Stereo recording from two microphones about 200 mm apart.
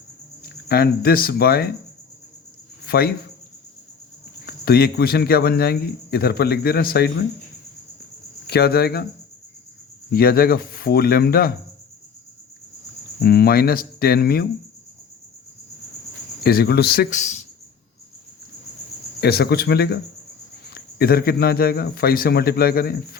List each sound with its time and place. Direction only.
0.4 s speech: 50° left (ahead or behind)
2.8 s a man's voice: 50° left (ahead or behind)
4.4 s a man's voice: 50° left (ahead or behind)
8.4 s a man's voice: 50° left (ahead or behind)
10.1 s a man's voice: 50° left (ahead or behind)
13.2 s a man's voice: 50° left (ahead or behind)
16.4 s a man's voice: 50° left (ahead or behind)
17.2 s speech: 35° left (ahead or behind)
19.2 s a man's voice: 55° left (ahead or behind)